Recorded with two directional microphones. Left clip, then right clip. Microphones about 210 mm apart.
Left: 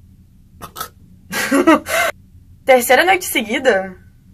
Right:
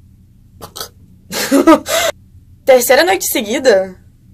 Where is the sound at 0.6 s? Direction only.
10° right (ahead or behind).